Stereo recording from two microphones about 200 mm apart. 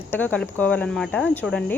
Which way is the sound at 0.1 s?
10° left (ahead or behind).